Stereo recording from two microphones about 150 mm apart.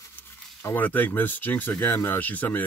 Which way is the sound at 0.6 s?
10° left (ahead or behind).